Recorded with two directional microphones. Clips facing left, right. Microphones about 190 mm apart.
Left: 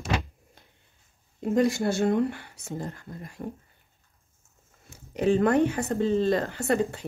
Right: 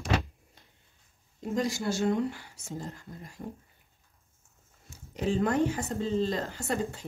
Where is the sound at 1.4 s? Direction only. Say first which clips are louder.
Left 7 dB; 60° left (ahead or behind).